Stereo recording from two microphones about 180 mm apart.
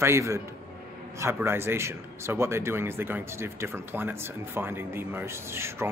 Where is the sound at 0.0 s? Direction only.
15° right (ahead or behind).